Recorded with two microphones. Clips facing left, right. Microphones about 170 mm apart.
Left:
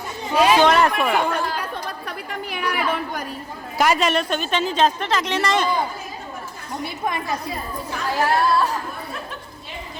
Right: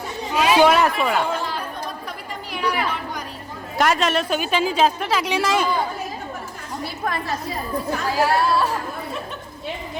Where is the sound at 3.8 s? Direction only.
Centre (ahead or behind).